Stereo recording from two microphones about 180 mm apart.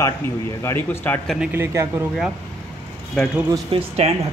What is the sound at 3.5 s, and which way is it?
Speech, 30° right (ahead or behind).